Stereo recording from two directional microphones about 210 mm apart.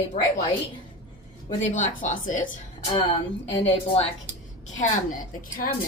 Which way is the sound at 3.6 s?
25° left (ahead or behind).